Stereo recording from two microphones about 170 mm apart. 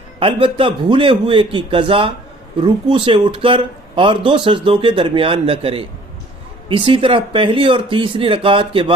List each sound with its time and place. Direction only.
0.2 s speech: 30° right (ahead or behind)